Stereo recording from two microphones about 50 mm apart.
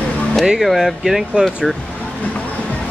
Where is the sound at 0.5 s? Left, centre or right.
Centre.